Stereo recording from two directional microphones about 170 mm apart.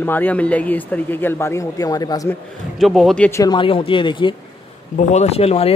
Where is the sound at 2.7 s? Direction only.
Centre (ahead or behind).